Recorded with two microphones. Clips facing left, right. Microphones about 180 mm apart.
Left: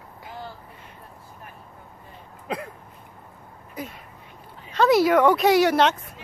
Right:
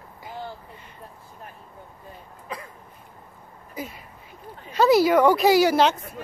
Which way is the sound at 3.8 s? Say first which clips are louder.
Even; centre (ahead or behind).